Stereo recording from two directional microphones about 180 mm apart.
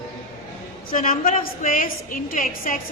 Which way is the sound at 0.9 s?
50° left (ahead or behind).